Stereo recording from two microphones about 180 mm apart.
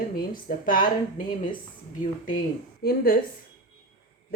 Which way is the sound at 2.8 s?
55° left (ahead or behind).